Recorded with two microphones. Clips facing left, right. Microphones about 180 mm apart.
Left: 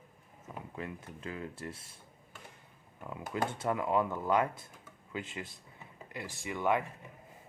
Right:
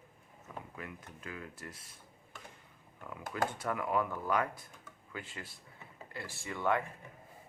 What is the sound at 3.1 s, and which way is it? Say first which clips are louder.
Speech: left 1 dB; 25° left (ahead or behind).